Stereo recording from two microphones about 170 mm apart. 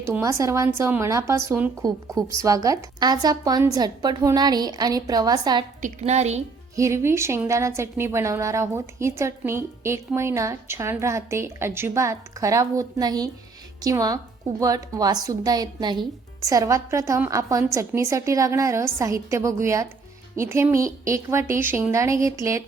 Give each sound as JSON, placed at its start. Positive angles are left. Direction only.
{"t": 0.0, "sound": "a woman's voice", "side_deg": -15}
{"t": 5.8, "sound": "a woman's voice", "side_deg": -40}
{"t": 6.7, "sound": "a woman's voice", "side_deg": -15}